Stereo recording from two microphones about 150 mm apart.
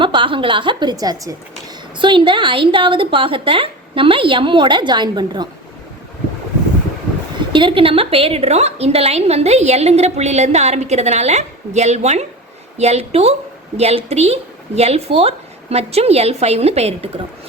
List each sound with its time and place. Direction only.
0.0 s a woman's voice: 35° right (ahead or behind)
7.5 s a woman's voice: 35° right (ahead or behind)